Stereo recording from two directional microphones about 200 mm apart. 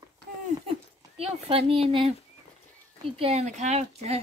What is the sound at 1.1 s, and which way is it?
Speech, 30° right (ahead or behind).